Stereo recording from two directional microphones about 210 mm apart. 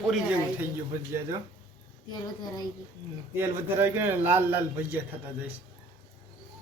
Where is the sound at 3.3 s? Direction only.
10° right (ahead or behind).